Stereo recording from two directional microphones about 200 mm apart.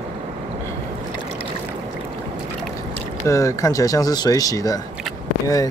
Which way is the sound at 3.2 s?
15° left (ahead or behind).